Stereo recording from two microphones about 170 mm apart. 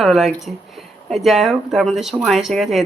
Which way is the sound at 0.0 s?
Centre (ahead or behind).